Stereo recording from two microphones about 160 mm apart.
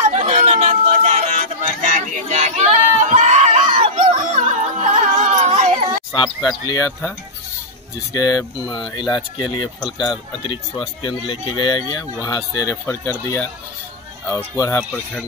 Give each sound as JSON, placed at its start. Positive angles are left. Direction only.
{"t": 0.3, "sound": "music", "side_deg": -45}
{"t": 4.0, "sound": "music", "side_deg": -50}
{"t": 6.1, "sound": "speech", "side_deg": 30}
{"t": 8.1, "sound": "speech", "side_deg": 25}